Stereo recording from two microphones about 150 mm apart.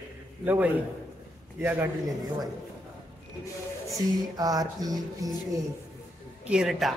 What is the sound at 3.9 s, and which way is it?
Music, 25° right (ahead or behind).